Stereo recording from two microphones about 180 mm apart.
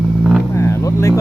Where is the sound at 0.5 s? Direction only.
15° left (ahead or behind).